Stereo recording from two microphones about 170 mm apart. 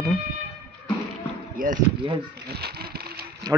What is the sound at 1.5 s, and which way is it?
Speech, 50° right (ahead or behind).